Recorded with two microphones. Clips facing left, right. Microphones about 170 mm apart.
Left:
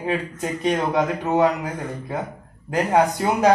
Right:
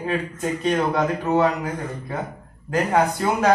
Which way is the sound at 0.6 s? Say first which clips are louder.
Left 1 dB; 20° left (ahead or behind).